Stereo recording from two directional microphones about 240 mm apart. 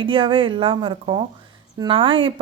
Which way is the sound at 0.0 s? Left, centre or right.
Right.